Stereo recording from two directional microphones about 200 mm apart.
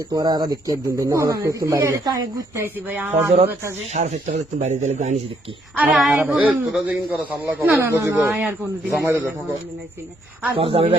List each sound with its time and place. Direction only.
0.1 s speech: 20° right (ahead or behind)
3.9 s speech: 35° right (ahead or behind)
5.7 s speech: 5° right (ahead or behind)
10.6 s speech: 30° right (ahead or behind)